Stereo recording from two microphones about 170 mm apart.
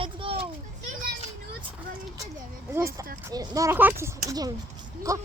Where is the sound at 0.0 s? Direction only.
30° right (ahead or behind).